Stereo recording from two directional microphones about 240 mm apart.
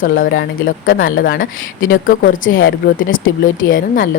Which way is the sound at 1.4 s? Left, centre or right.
Left.